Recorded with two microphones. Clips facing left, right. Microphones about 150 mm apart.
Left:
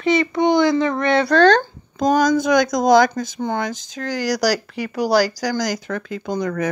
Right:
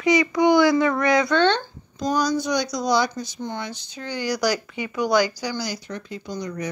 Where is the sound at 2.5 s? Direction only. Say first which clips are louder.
Left 8 dB; 90° left.